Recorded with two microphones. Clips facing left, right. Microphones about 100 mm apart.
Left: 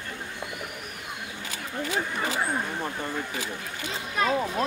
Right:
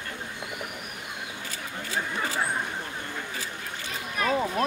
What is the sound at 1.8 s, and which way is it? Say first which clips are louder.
Chatter: left 1 dB; 15° left (ahead or behind).